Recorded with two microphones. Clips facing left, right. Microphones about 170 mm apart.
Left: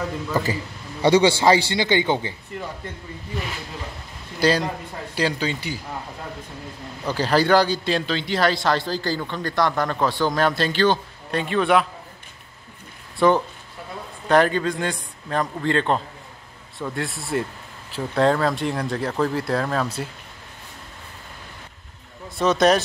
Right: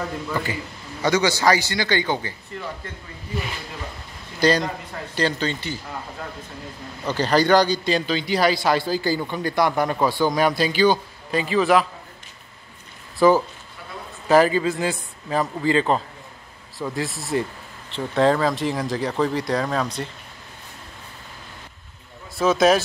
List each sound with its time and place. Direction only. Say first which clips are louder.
1.0 s a man's voice: left 3 dB; 30° left (ahead or behind)
4.4 s speech: right 1 dB; 5° left (ahead or behind)
7.1 s a man's voice: right 1 dB; 5° left (ahead or behind)
13.2 s speech: right 2 dB; 5° right (ahead or behind)
22.4 s speech: right 1 dB; centre (ahead or behind)